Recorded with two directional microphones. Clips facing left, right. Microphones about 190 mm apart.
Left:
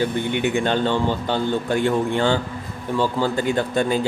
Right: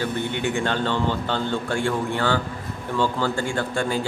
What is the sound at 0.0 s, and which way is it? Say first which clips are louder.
A man's voice: left 4 dB; 15° left (ahead or behind).